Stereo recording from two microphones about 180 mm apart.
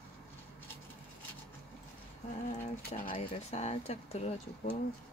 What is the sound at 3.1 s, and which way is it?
Speech, 30° left (ahead or behind).